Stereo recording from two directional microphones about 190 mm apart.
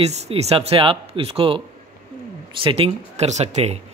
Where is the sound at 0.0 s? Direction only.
35° right (ahead or behind).